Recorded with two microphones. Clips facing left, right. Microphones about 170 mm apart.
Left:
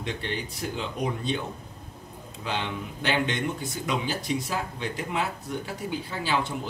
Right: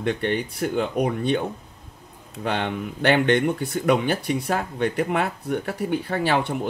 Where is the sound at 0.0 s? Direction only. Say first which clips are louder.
Right 8 dB; 60° right (ahead or behind).